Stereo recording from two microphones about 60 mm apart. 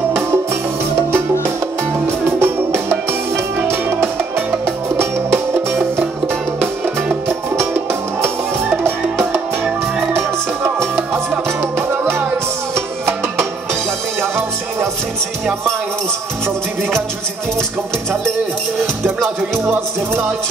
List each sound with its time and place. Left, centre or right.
2.4 s music: right
12.7 s music: right